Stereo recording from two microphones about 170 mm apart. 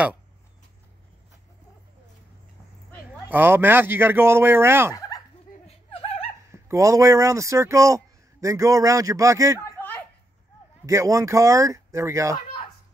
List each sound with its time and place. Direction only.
3.3 s speech: 10° right (ahead or behind)
4.9 s a sound: 20° left (ahead or behind)
6.5 s speech: 15° right (ahead or behind)
10.9 s speech: 20° right (ahead or behind)